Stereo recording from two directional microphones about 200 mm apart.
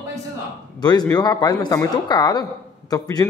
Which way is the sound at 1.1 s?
20° left (ahead or behind).